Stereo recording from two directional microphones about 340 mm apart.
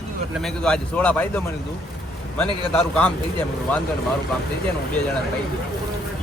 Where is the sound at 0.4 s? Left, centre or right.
Centre.